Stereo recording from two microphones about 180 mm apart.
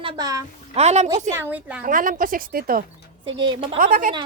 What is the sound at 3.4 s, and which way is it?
Speech, 30° right (ahead or behind).